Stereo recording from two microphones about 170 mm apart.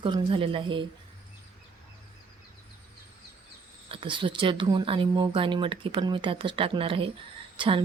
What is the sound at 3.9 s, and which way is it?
A woman's voice, 30° right (ahead or behind).